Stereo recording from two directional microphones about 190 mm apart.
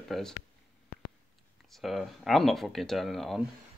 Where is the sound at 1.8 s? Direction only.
Centre (ahead or behind).